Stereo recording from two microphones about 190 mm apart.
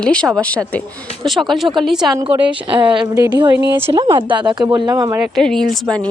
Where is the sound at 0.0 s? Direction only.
5° left (ahead or behind).